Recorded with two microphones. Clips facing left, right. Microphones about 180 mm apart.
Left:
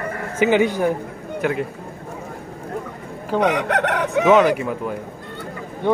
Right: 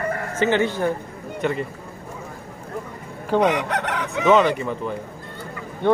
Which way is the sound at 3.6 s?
60° left (ahead or behind).